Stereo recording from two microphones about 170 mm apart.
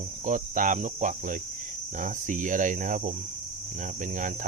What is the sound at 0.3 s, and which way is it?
Speech, 50° right (ahead or behind).